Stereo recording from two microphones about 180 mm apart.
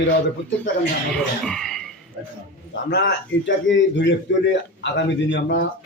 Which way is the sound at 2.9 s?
75° left (ahead or behind).